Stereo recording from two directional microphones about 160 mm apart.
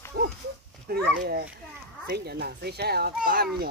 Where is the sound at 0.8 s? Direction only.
60° right (ahead or behind).